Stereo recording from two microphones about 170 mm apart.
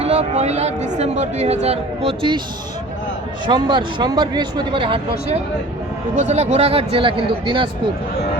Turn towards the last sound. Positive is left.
turn(degrees=-30)  # may be behind; listen again after turning